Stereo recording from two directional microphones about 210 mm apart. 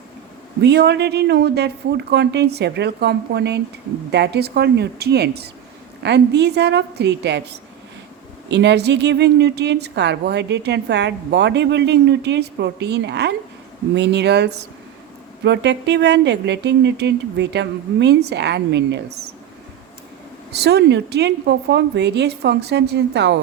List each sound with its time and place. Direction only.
0.6 s a woman's voice: 50° right (ahead or behind)
20.5 s a woman's voice: 50° right (ahead or behind)